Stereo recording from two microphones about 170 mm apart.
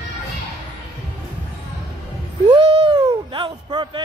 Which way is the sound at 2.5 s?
25° right (ahead or behind).